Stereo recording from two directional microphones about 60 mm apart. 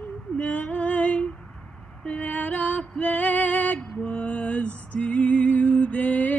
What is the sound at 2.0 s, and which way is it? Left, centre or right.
Music, left.